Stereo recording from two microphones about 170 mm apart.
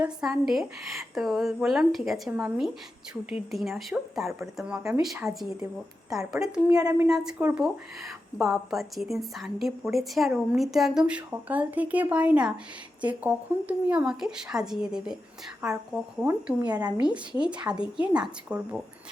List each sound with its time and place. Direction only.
0.0 s a woman's voice: 5° right (ahead or behind)
6.7 s speech: 20° right (ahead or behind)
7.1 s a woman's voice: 5° right (ahead or behind)